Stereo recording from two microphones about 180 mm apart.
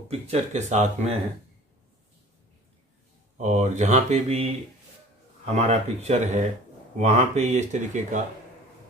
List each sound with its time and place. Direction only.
0.1 s speech: 40° right (ahead or behind)
3.3 s speech: 40° right (ahead or behind)